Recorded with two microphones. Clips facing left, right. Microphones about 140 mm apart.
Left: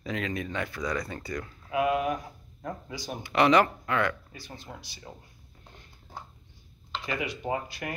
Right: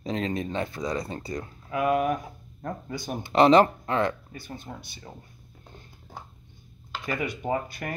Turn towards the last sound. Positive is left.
turn(degrees=-50)  # may be behind; listen again after turning